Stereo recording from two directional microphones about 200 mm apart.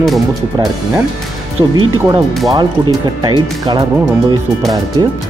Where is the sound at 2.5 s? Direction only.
20° right (ahead or behind).